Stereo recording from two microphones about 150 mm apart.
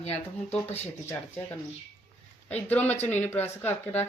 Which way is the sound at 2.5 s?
10° left (ahead or behind).